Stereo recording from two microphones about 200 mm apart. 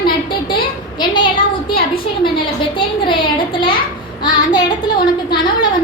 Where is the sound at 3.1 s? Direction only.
25° left (ahead or behind).